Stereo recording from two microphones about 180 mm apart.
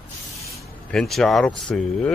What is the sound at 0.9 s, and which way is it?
Speech, centre (ahead or behind).